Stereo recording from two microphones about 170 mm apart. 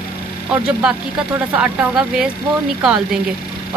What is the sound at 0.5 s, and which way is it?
Speech, 5° right (ahead or behind).